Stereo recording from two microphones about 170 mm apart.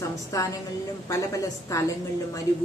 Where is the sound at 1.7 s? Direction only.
20° left (ahead or behind).